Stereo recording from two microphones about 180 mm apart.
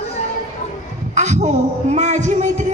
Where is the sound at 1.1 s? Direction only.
40° right (ahead or behind).